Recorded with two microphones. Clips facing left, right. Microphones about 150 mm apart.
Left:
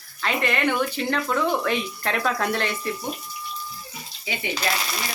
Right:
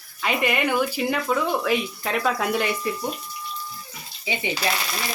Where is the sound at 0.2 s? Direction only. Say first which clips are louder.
Right 1 dB; 10° right (ahead or behind).